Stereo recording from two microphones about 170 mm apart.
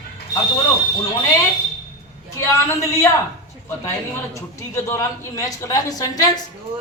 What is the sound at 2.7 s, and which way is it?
A woman's voice, 15° left (ahead or behind).